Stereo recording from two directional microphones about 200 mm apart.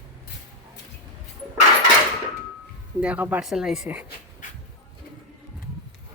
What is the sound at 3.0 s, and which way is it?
Speech, 5° right (ahead or behind).